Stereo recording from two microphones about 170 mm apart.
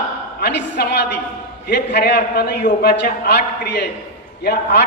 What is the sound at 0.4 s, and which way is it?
A woman's voice, 80° left.